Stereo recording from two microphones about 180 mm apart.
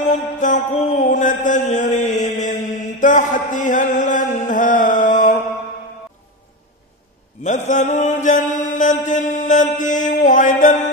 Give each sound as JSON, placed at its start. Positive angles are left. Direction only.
{"t": 0.0, "sound": "mantra", "side_deg": 45}
{"t": 7.4, "sound": "mantra", "side_deg": 45}
{"t": 10.0, "sound": "music", "side_deg": 45}